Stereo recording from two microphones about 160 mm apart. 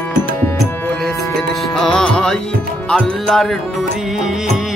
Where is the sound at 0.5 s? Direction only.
Centre (ahead or behind).